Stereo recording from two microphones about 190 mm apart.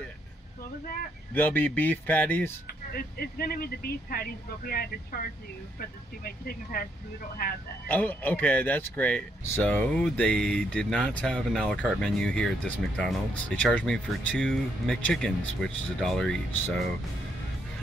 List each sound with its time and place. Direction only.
1.3 s speech: 10° left (ahead or behind)
2.6 s speech: 50° left (ahead or behind)
7.9 s speech: 10° left (ahead or behind)